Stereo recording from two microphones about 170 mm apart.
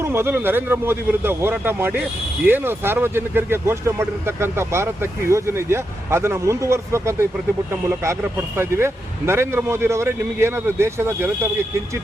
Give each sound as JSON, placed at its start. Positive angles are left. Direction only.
{"t": 0.0, "sound": "speech", "side_deg": -15}
{"t": 8.5, "sound": "speech", "side_deg": -15}